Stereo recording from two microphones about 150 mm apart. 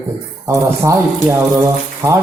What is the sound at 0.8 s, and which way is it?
A man's voice, 20° right (ahead or behind).